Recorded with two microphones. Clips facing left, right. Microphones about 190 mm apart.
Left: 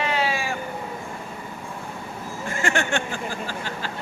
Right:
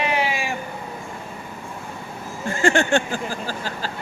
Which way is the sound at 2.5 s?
30° right (ahead or behind).